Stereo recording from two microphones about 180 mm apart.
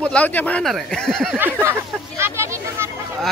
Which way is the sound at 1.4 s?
15° right (ahead or behind).